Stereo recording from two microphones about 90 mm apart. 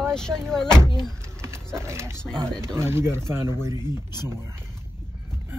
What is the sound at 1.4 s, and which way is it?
Speech, 30° right (ahead or behind).